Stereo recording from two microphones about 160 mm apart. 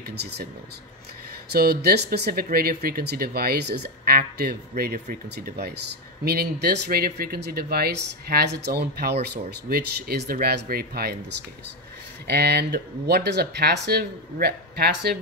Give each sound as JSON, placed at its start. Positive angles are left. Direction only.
{"t": 0.1, "sound": "speech", "side_deg": -90}
{"t": 1.5, "sound": "speech", "side_deg": -75}
{"t": 5.3, "sound": "speech", "side_deg": -90}
{"t": 6.2, "sound": "speech", "side_deg": -75}
{"t": 12.3, "sound": "speech", "side_deg": -90}